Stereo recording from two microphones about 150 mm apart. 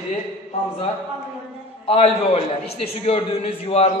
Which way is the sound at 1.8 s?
40° left (ahead or behind).